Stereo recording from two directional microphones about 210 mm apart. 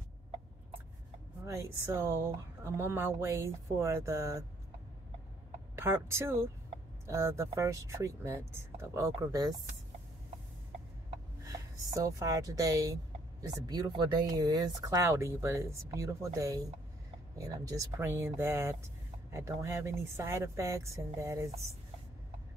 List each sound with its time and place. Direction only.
1.4 s speech: 15° right (ahead or behind)
5.8 s speech: 10° right (ahead or behind)
11.4 s speech: 15° right (ahead or behind)